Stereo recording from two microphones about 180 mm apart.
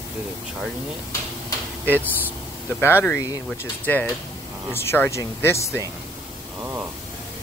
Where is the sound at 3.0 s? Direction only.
20° left (ahead or behind).